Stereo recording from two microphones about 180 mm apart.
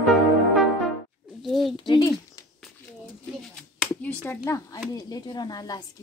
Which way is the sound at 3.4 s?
5° left (ahead or behind).